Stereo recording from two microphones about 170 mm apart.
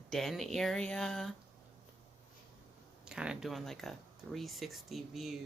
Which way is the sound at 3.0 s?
5° right (ahead or behind).